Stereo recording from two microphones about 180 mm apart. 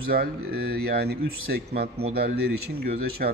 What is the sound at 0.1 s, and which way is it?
Speech, 60° right (ahead or behind).